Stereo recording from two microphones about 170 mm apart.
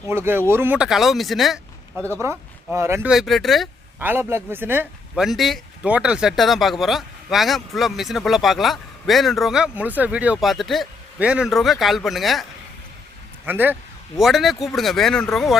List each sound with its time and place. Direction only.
0.1 s speech: 15° right (ahead or behind)
2.7 s speech: 15° right (ahead or behind)
3.1 s speech: centre (ahead or behind)
4.0 s speech: 15° right (ahead or behind)
13.4 s speech: 10° right (ahead or behind)